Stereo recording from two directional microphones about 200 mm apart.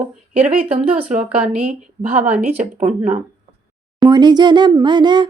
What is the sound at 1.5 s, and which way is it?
Speech, 40° right (ahead or behind).